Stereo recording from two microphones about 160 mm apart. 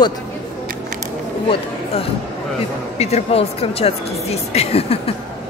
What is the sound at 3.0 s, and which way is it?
Speech, 40° left (ahead or behind).